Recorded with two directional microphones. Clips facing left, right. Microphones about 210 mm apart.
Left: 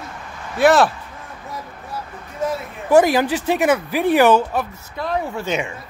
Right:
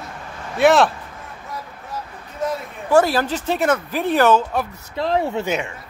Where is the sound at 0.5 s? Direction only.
Centre (ahead or behind).